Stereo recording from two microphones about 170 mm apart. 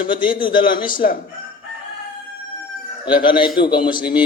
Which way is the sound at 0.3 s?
30° left (ahead or behind).